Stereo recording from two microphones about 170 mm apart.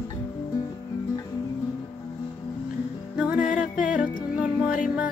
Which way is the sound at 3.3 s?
50° left (ahead or behind).